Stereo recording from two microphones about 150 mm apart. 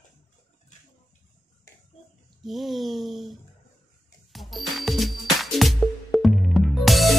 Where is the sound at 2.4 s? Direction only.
Centre (ahead or behind).